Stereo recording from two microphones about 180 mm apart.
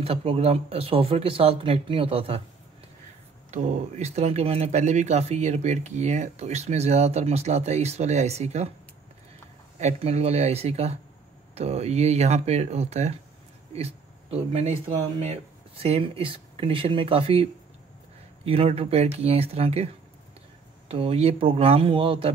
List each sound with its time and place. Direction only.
0.0 s speech: 35° right (ahead or behind)
3.5 s speech: 35° right (ahead or behind)
9.8 s speech: 35° right (ahead or behind)
20.9 s speech: 35° right (ahead or behind)